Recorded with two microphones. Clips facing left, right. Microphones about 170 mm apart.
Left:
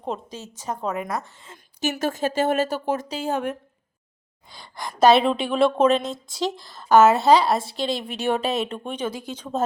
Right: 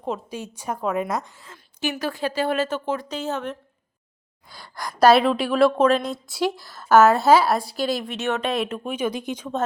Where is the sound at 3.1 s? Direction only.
10° left (ahead or behind).